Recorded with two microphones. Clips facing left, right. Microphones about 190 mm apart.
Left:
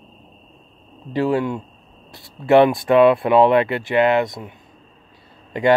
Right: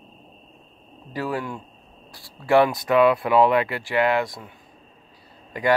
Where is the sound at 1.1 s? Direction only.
25° left (ahead or behind).